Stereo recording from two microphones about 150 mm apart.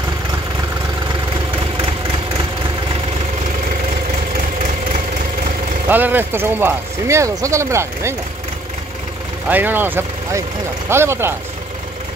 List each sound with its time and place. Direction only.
5.9 s speech: 10° right (ahead or behind)
9.5 s speech: 15° right (ahead or behind)